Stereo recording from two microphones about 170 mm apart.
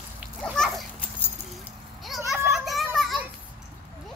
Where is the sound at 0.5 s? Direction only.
Centre (ahead or behind).